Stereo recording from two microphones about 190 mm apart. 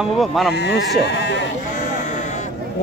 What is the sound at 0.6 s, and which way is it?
Speech, 60° left (ahead or behind).